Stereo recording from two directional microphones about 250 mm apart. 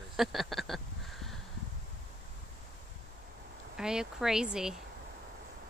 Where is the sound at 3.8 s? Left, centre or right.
Centre.